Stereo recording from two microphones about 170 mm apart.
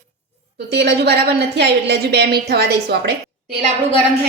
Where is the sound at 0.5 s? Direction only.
75° right (ahead or behind).